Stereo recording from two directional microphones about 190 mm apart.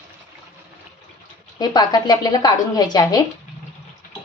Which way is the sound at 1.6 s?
20° left (ahead or behind).